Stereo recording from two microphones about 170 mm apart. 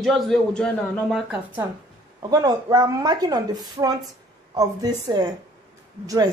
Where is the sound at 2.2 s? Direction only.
20° right (ahead or behind).